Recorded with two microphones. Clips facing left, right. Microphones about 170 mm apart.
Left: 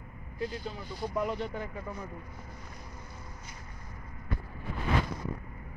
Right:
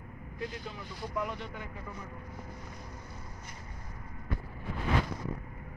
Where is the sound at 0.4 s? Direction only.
30° left (ahead or behind).